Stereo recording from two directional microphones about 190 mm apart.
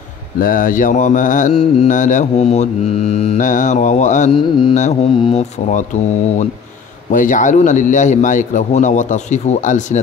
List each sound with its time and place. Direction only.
0.4 s mantra: 45° left (ahead or behind)
1.5 s mantra: 30° left (ahead or behind)
4.4 s music: 25° left (ahead or behind)
4.7 s mantra: 40° left (ahead or behind)
7.1 s mantra: 45° left (ahead or behind)